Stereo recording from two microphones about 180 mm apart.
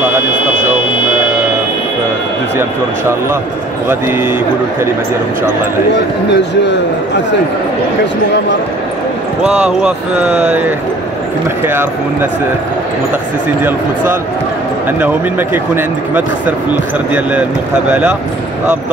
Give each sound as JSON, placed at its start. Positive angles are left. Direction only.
{"t": 6.3, "sound": "speech", "side_deg": 75}
{"t": 9.4, "sound": "speech", "side_deg": -5}
{"t": 11.6, "sound": "speech", "side_deg": -10}
{"t": 14.9, "sound": "speech", "side_deg": -10}